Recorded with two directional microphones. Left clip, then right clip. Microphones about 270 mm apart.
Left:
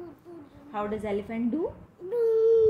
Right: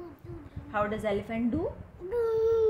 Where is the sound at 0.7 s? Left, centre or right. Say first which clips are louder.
Right 2 dB; right.